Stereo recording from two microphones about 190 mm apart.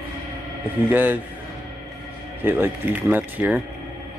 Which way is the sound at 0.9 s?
10° right (ahead or behind).